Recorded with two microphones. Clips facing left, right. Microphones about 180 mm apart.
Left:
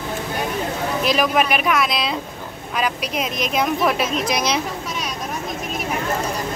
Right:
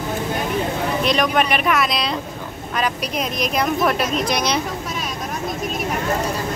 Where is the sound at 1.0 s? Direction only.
Centre (ahead or behind).